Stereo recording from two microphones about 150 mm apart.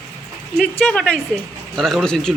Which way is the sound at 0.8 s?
5° left (ahead or behind).